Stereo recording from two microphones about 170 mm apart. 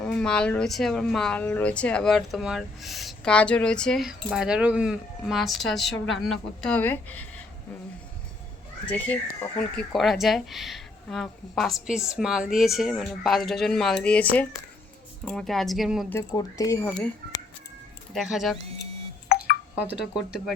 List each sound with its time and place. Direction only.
0.0 s a woman's voice: 5° left (ahead or behind)
8.9 s a woman's voice: 10° left (ahead or behind)
16.0 s speech: 20° left (ahead or behind)
18.1 s a woman's voice: centre (ahead or behind)
19.7 s speech: 10° right (ahead or behind)